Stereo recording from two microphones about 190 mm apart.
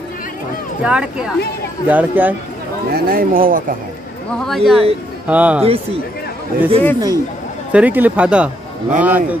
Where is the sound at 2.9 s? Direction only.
50° right (ahead or behind).